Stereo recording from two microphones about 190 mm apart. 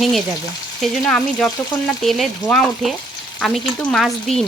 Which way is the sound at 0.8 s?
5° left (ahead or behind).